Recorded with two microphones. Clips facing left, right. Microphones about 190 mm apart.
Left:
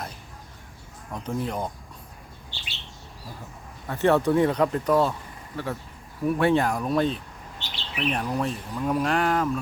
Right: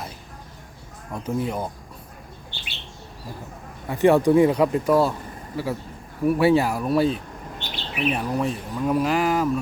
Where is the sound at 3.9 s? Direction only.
10° right (ahead or behind).